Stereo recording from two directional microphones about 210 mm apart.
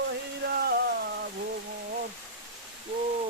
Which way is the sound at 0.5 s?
50° right (ahead or behind).